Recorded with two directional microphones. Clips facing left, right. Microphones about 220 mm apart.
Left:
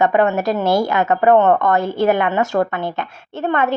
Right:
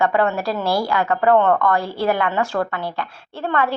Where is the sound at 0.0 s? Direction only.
20° left (ahead or behind).